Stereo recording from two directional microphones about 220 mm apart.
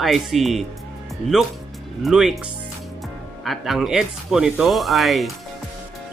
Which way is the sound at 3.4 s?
Centre (ahead or behind).